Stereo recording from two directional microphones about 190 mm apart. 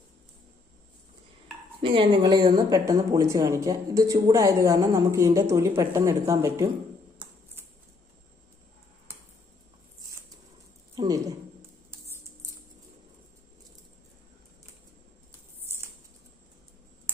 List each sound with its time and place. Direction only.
1.8 s speech: 25° right (ahead or behind)
10.9 s a sound: 20° right (ahead or behind)
11.9 s music: 15° right (ahead or behind)